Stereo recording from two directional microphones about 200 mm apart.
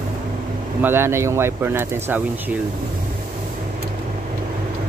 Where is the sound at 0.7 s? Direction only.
10° right (ahead or behind).